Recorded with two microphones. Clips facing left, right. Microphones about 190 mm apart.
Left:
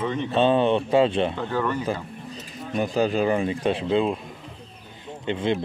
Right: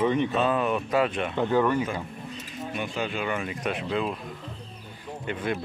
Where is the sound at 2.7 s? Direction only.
40° left (ahead or behind).